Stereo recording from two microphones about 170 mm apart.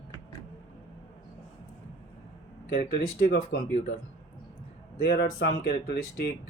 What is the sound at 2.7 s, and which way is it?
Speech, 55° left (ahead or behind).